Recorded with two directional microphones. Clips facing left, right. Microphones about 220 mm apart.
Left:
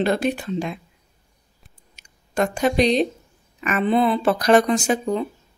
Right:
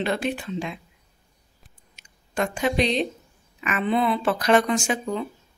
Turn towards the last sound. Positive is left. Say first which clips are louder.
# left 4 dB
turn(degrees=40)  # may be behind; listen again after turning